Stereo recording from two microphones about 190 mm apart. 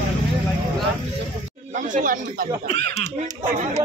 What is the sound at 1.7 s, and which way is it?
Speech, 40° right (ahead or behind).